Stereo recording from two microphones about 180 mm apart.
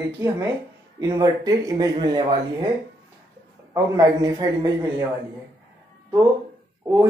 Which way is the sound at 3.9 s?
20° right (ahead or behind).